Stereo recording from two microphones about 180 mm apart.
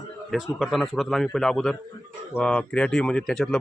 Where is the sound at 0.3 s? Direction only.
Centre (ahead or behind).